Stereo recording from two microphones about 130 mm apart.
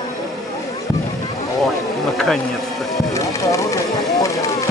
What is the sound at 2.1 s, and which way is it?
Bee, 5° left (ahead or behind).